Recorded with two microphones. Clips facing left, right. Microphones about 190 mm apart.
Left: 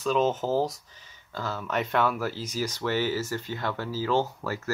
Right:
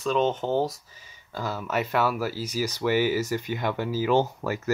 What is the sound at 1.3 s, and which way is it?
Speech, 10° right (ahead or behind).